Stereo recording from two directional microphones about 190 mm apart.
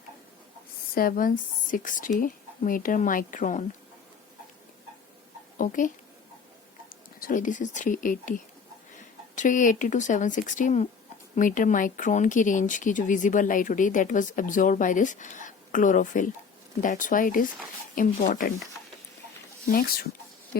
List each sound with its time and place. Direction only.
0.9 s speech: 45° left (ahead or behind)
5.5 s speech: 45° left (ahead or behind)
7.2 s speech: 45° left (ahead or behind)